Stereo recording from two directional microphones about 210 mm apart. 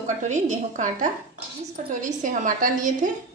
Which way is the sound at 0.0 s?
35° right (ahead or behind).